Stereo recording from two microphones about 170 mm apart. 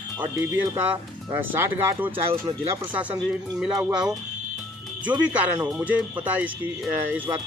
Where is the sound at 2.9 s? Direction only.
10° right (ahead or behind).